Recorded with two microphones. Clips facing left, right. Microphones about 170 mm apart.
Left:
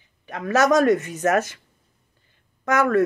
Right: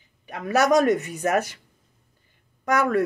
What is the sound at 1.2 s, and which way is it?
Speech, 15° right (ahead or behind).